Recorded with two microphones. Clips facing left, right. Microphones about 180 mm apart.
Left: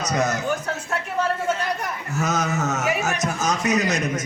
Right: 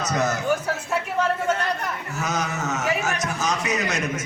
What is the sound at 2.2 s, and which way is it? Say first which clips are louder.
A man's voice: left 3 dB; 45° left (ahead or behind).